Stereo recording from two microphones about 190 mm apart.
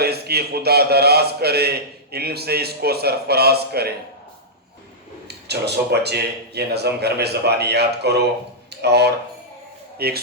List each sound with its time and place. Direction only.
0.0 s speech: 55° right (ahead or behind)
5.3 s speech: 60° right (ahead or behind)